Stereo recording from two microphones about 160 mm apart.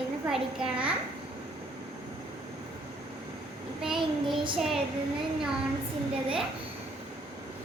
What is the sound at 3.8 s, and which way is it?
Child singing, 5° right (ahead or behind).